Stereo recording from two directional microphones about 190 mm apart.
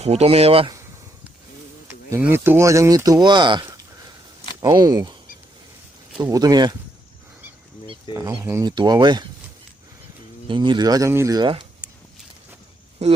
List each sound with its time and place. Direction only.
0.0 s speech: 35° right (ahead or behind)
2.0 s speech: 10° right (ahead or behind)
6.3 s speech: 20° right (ahead or behind)
8.1 s speech: 15° right (ahead or behind)
10.5 s speech: 25° right (ahead or behind)